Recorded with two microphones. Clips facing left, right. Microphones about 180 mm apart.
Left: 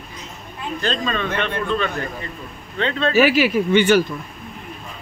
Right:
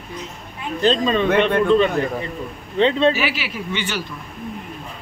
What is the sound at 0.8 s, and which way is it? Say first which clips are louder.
Speech: right 7 dB; 25° right (ahead or behind).